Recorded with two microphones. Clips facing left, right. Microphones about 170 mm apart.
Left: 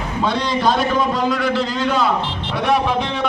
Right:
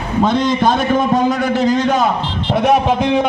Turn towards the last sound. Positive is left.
turn(degrees=-45)  # may be behind; listen again after turning